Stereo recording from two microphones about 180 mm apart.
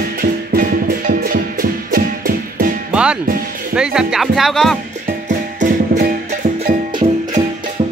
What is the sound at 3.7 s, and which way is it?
Speech, 5° right (ahead or behind).